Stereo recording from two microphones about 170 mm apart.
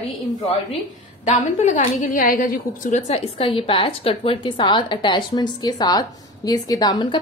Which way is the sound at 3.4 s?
30° left (ahead or behind).